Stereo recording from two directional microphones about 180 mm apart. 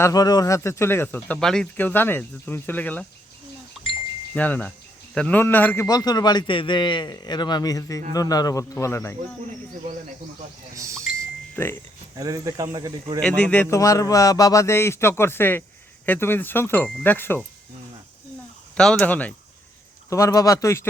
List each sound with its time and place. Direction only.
0.0 s speech: 20° left (ahead or behind)
4.4 s a man's voice: 10° left (ahead or behind)
11.5 s speech: 10° left (ahead or behind)
12.1 s speech: 20° right (ahead or behind)
13.2 s speech: 5° left (ahead or behind)
18.8 s speech: 5° left (ahead or behind)